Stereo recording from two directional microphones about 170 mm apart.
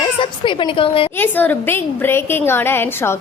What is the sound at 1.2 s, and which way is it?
A woman's voice, 10° left (ahead or behind).